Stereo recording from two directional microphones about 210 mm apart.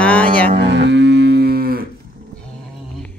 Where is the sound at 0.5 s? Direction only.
55° right (ahead or behind).